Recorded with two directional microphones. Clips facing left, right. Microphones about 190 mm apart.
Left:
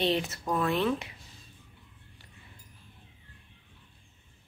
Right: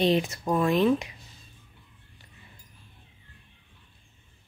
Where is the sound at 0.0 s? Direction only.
15° right (ahead or behind).